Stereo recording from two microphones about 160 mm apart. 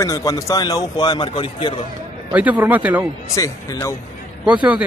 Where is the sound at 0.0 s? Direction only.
20° left (ahead or behind).